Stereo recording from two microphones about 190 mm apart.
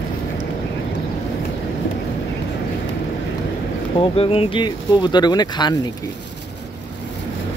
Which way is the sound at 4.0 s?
30° left (ahead or behind).